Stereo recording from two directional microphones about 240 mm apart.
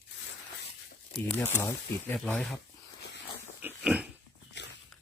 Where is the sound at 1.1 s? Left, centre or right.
Centre.